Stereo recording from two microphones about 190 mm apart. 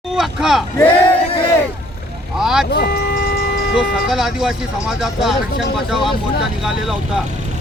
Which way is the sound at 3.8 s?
Centre (ahead or behind).